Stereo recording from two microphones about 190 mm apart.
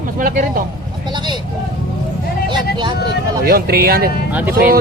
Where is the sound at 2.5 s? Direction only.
25° right (ahead or behind).